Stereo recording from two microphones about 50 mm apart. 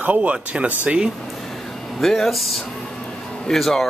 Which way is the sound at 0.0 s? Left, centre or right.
Right.